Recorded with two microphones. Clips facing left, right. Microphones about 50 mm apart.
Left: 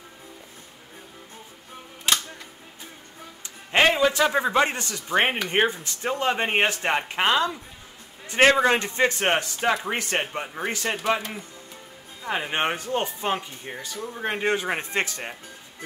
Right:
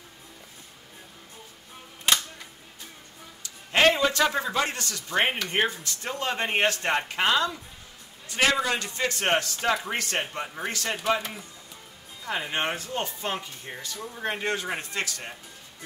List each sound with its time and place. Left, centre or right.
3.4 s a sound: centre
4.3 s speech: left
8.3 s speech: left
10.4 s speech: centre
10.7 s speech: left
11.0 s speech: centre
12.2 s speech: left